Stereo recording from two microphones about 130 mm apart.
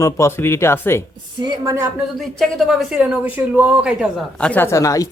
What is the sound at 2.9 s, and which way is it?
Speech, 10° right (ahead or behind).